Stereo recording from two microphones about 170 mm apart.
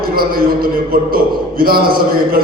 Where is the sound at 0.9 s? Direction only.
60° right (ahead or behind).